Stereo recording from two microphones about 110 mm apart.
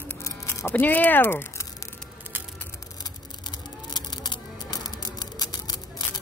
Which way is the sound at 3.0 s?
40° left (ahead or behind).